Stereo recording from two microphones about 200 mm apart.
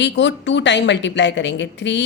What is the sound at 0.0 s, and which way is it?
A woman's voice, 65° left (ahead or behind).